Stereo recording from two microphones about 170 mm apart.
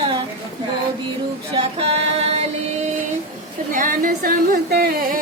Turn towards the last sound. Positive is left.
turn(degrees=-65)  # may be behind; listen again after turning